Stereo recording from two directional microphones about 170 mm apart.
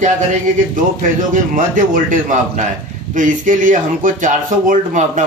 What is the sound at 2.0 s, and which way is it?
Speech, 50° right (ahead or behind).